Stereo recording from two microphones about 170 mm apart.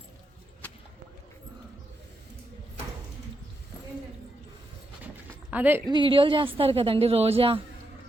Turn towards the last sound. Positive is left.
turn(degrees=-35)  # may be behind; listen again after turning